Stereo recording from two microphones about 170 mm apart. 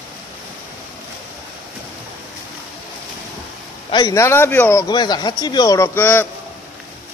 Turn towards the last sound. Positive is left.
turn(degrees=10)  # may be behind; listen again after turning